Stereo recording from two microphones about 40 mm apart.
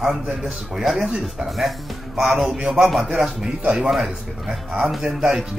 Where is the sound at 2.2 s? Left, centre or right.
Centre.